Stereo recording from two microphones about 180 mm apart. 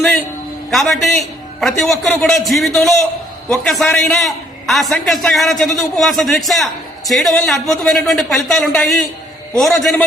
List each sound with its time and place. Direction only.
0.7 s a man's voice: centre (ahead or behind)